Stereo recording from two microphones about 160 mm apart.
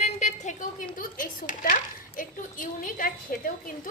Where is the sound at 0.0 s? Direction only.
45° left (ahead or behind).